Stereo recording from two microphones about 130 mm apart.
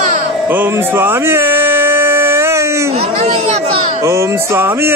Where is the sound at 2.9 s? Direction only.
55° right (ahead or behind).